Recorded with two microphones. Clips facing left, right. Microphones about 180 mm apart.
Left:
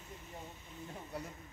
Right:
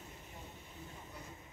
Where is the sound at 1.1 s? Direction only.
70° left (ahead or behind).